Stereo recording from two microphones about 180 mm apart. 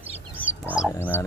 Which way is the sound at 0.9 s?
10° left (ahead or behind).